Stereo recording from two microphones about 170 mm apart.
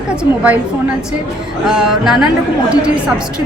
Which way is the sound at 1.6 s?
Centre (ahead or behind).